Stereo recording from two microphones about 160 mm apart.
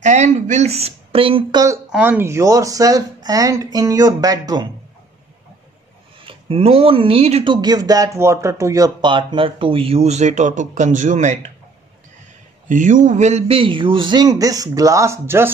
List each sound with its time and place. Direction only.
0.0 s speech: 45° right (ahead or behind)
1.9 s speech: 10° right (ahead or behind)
6.2 s speech: 35° right (ahead or behind)
12.6 s speech: 55° right (ahead or behind); by 15.5 s 15° right (ahead or behind)